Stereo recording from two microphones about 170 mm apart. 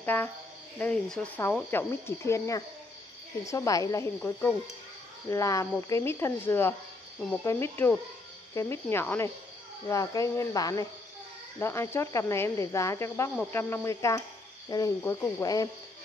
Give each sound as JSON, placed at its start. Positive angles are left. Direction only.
{"t": 0.0, "sound": "speech", "side_deg": 10}
{"t": 4.2, "sound": "speech", "side_deg": 5}
{"t": 5.3, "sound": "speech", "side_deg": 20}